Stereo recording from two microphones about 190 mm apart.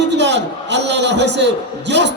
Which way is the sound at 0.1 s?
65° right (ahead or behind).